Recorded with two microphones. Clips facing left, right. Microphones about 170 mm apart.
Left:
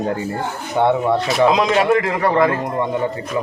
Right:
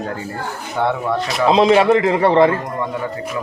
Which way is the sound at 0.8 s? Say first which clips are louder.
Left 4 dB; 20° left (ahead or behind).